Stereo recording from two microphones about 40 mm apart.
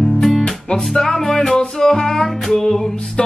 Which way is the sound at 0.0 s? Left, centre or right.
Centre.